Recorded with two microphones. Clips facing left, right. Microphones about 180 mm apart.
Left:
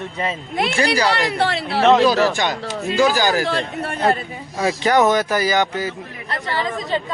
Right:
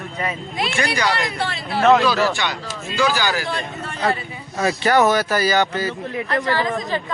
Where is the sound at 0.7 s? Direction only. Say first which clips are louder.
Left 3 dB; 35° left (ahead or behind).